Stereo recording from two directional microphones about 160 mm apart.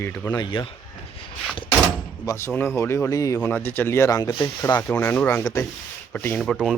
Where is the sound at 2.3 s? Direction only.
15° left (ahead or behind).